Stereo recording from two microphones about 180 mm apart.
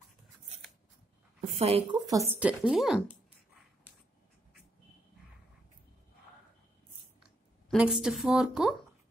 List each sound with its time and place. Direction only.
1.4 s speech: 35° right (ahead or behind)
2.0 s a woman's voice: 15° right (ahead or behind)
7.7 s a woman's voice: 5° right (ahead or behind)